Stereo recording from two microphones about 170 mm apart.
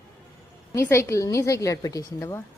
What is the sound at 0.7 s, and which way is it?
A woman's voice, 15° left (ahead or behind).